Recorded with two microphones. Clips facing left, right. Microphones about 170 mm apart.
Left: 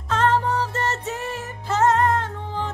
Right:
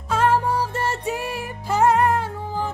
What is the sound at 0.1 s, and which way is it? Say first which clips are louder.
Music: right 1 dB; 10° right (ahead or behind).